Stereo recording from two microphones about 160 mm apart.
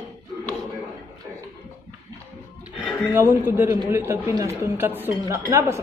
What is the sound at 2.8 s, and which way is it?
A woman's voice, 10° right (ahead or behind).